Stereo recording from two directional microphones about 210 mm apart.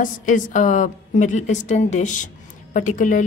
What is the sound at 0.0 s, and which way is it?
A woman's voice, 40° left (ahead or behind).